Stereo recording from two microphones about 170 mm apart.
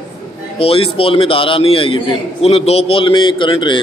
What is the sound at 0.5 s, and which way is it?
A man's voice, 35° left (ahead or behind).